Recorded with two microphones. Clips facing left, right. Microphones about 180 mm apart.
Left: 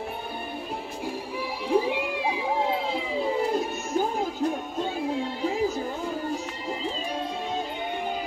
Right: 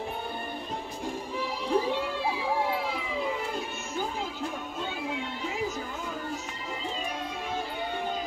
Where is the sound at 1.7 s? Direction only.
15° left (ahead or behind); by 4.3 s 40° left (ahead or behind).